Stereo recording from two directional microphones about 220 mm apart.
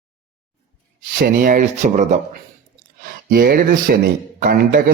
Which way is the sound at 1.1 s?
40° right (ahead or behind).